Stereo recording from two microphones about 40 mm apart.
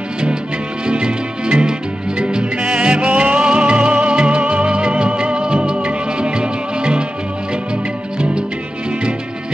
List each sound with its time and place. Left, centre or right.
0.8 s music: right
8.2 s music: right